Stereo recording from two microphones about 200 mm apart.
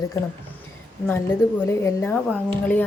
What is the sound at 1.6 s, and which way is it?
Speech, 10° left (ahead or behind).